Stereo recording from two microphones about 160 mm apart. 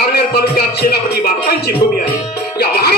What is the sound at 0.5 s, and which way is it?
Music, 80° left.